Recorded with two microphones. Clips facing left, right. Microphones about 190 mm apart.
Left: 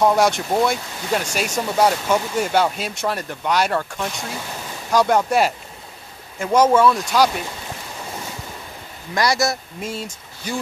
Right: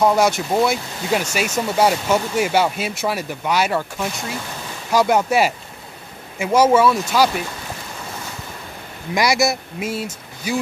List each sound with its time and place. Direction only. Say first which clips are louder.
0.0 s speech: even; centre (ahead or behind)
9.1 s speech: right 2 dB; 10° right (ahead or behind)